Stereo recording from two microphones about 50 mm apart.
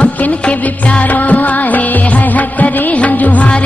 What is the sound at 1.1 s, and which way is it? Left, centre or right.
Music of bollywood, left.